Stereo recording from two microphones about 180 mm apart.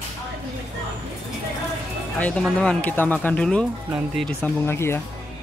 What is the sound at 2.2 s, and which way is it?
Speech, 5° left (ahead or behind).